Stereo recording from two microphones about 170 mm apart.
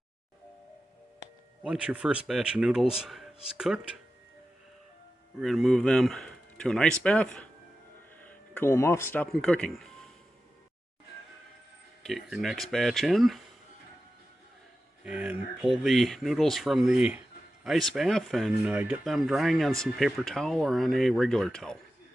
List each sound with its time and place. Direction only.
1.6 s speech: 5° right (ahead or behind)
5.4 s speech: centre (ahead or behind)
12.0 s speech: centre (ahead or behind)
15.0 s speech: 5° right (ahead or behind)